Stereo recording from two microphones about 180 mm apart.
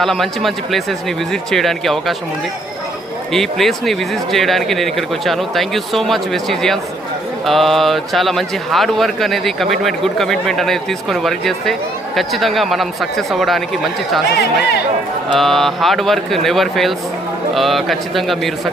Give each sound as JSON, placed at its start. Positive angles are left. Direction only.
{"t": 0.0, "sound": "a man's voice", "side_deg": 0}
{"t": 3.3, "sound": "a man's voice", "side_deg": 0}
{"t": 14.3, "sound": "speech", "side_deg": 65}
{"t": 15.4, "sound": "a man's voice", "side_deg": 0}